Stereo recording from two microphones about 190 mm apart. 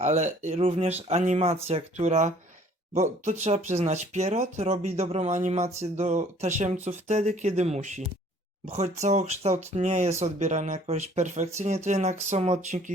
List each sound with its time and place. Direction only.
0.0 s speech: 40° right (ahead or behind)